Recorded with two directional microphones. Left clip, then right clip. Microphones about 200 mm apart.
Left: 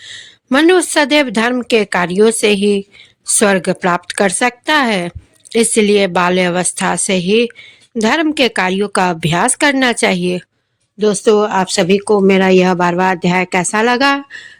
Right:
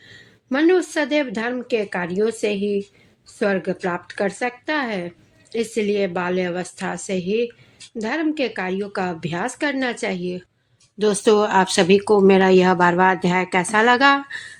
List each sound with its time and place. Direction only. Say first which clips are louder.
0.1 s speech: left 10 dB; 40° left (ahead or behind)
10.9 s speech: left 5 dB; 25° left (ahead or behind)